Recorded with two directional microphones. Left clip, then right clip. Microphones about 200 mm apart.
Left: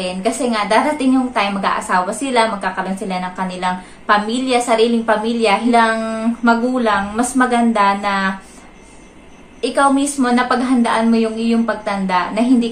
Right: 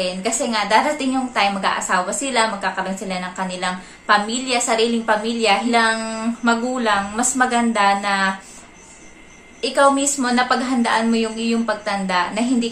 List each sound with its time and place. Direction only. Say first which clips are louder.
0.0 s a woman's voice: left 3 dB; 5° right (ahead or behind)
9.6 s a woman's voice: left 1 dB; 5° right (ahead or behind)